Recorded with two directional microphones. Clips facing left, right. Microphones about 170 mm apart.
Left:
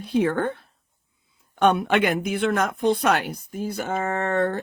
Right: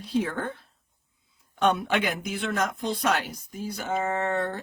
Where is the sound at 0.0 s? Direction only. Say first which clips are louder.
Left 6 dB; 60° left (ahead or behind).